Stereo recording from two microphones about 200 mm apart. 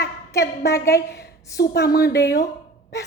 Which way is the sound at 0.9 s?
50° left (ahead or behind).